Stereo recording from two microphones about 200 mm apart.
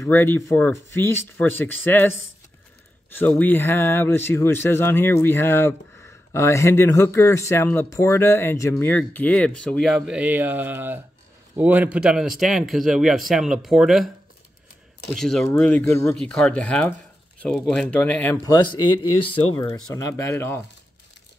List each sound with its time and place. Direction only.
0.0 s speech: 10° left (ahead or behind)
3.2 s a man's voice: 10° left (ahead or behind)
15.1 s a man's voice: centre (ahead or behind)